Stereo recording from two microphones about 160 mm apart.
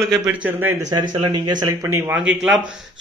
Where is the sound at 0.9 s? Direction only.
25° right (ahead or behind).